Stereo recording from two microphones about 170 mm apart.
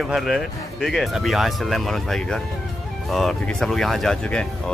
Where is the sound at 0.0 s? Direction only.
Centre (ahead or behind).